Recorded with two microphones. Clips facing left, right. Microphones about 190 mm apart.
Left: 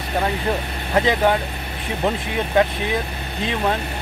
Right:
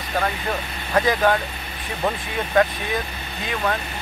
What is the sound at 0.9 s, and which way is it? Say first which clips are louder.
Speech: left 1 dB; 20° left (ahead or behind).